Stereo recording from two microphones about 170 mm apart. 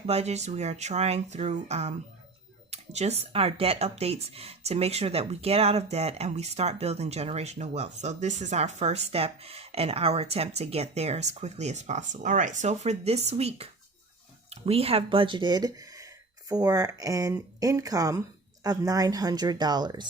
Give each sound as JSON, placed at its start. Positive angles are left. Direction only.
{"t": 0.0, "sound": "speech", "side_deg": -40}